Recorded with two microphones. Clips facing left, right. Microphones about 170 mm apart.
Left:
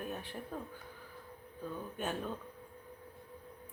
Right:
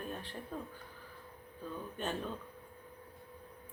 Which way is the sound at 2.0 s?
10° left (ahead or behind).